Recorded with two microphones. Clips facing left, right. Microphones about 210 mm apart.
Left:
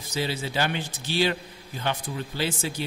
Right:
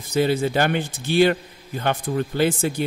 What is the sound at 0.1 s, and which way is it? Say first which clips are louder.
Speech: right 9 dB; 55° right (ahead or behind).